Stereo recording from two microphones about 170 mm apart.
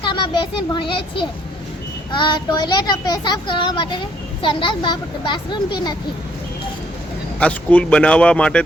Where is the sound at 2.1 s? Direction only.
25° left (ahead or behind).